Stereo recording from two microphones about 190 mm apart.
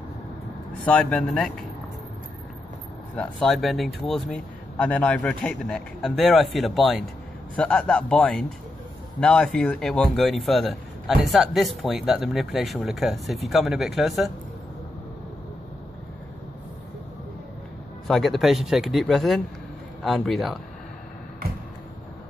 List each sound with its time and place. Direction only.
0.8 s speech: 5° left (ahead or behind)
3.2 s speech: centre (ahead or behind)
18.0 s speech: centre (ahead or behind)